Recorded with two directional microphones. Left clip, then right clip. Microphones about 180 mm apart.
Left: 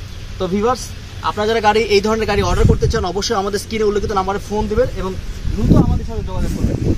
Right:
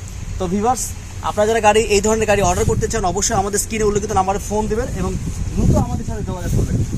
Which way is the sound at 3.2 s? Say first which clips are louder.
Even; 25° right (ahead or behind).